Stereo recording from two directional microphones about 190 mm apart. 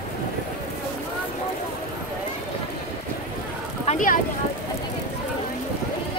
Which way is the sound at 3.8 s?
40° left (ahead or behind).